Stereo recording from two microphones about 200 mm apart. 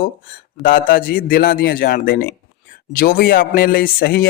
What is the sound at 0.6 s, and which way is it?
Speech, 45° left (ahead or behind).